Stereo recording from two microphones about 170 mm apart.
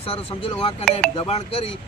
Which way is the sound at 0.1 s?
35° left (ahead or behind).